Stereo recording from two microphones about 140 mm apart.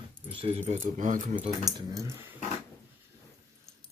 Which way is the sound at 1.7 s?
20° right (ahead or behind).